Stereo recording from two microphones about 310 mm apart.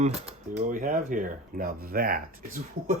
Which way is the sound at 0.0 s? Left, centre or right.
Right.